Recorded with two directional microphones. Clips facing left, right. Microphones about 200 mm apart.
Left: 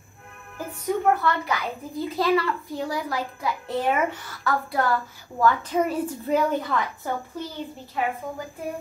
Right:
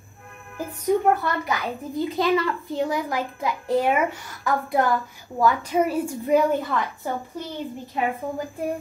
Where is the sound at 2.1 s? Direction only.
20° right (ahead or behind).